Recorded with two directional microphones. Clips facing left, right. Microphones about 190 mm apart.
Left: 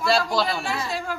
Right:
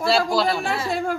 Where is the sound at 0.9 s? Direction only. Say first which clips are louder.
Right 5 dB; 55° right (ahead or behind).